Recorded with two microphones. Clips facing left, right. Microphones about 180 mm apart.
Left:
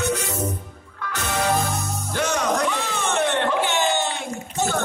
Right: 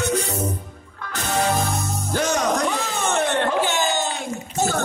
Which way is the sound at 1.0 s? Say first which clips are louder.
Right 2 dB; 35° right (ahead or behind).